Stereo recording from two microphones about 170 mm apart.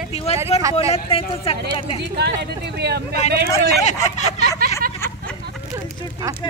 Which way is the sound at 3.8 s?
45° left (ahead or behind).